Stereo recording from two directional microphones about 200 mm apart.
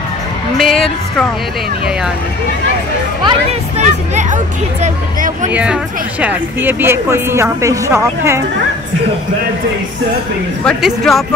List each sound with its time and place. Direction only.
0.6 s a woman's voice: centre (ahead or behind)
3.3 s speech: 35° right (ahead or behind)
5.5 s speech: 5° right (ahead or behind)
10.6 s speech: centre (ahead or behind)